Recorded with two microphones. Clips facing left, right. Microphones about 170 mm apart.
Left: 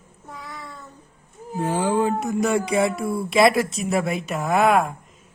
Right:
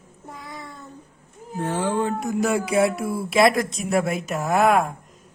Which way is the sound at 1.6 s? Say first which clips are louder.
Left 2 dB; 10° left (ahead or behind).